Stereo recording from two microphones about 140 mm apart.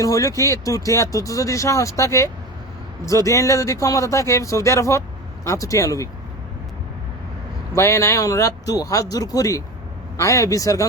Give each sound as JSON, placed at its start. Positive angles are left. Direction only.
{"t": 0.0, "sound": "speech", "side_deg": 25}
{"t": 7.7, "sound": "speech", "side_deg": 20}